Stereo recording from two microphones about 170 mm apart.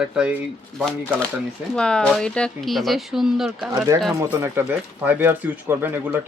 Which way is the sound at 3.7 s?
20° right (ahead or behind).